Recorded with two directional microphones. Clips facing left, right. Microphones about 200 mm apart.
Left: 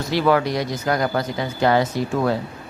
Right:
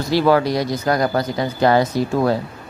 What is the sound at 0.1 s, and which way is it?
Speech, 35° right (ahead or behind).